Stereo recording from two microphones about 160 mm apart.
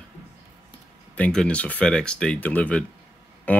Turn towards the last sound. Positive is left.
turn(degrees=10)  # may be behind; listen again after turning